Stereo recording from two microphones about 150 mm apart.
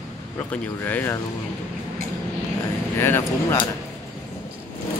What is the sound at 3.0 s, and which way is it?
Speech, 15° left (ahead or behind).